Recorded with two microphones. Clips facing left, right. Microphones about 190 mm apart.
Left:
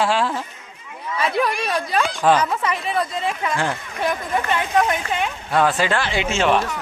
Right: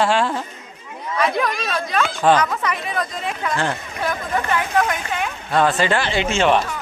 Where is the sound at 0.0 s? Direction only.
5° left (ahead or behind).